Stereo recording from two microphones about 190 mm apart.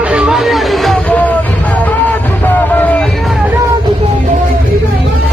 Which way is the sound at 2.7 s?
10° left (ahead or behind).